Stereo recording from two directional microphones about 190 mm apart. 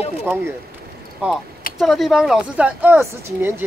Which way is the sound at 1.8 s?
Centre (ahead or behind).